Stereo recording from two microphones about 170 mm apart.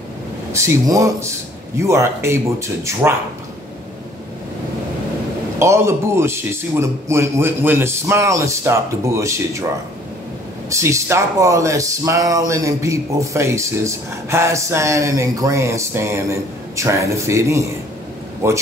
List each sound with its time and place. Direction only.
0.5 s speech: 15° right (ahead or behind)
5.6 s speech: 15° right (ahead or behind)
10.7 s speech: 20° right (ahead or behind)